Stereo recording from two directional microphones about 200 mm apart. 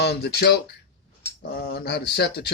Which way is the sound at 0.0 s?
55° left (ahead or behind).